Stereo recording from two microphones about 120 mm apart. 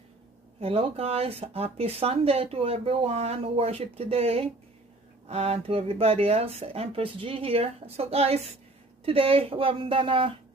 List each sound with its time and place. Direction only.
0.6 s speech: 55° right (ahead or behind)